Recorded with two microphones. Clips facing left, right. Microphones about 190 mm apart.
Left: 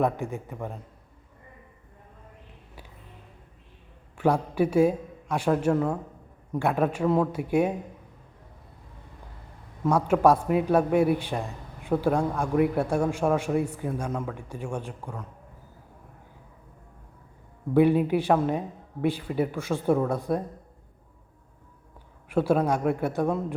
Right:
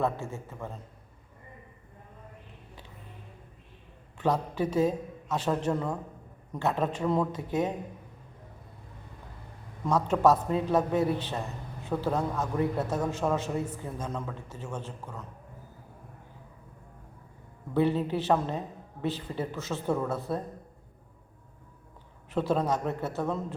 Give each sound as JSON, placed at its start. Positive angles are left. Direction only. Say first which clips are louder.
{"t": 0.0, "sound": "a man's voice", "louder": "left 4 dB", "side_deg": 15}
{"t": 4.2, "sound": "a man's voice", "louder": "left 5 dB", "side_deg": 10}
{"t": 9.8, "sound": "a man's voice", "louder": "left 3 dB", "side_deg": 10}
{"t": 17.7, "sound": "a man's voice", "louder": "left 6 dB", "side_deg": 10}
{"t": 22.3, "sound": "a man's voice", "louder": "left 4 dB", "side_deg": 10}